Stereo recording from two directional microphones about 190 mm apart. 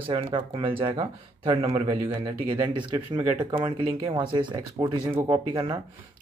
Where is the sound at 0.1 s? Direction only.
25° right (ahead or behind).